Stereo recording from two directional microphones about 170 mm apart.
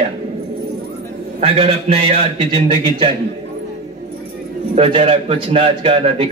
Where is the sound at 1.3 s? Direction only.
35° right (ahead or behind).